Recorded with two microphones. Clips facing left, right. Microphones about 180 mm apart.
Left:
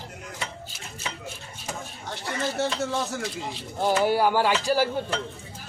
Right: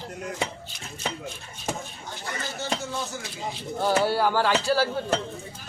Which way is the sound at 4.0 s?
15° left (ahead or behind).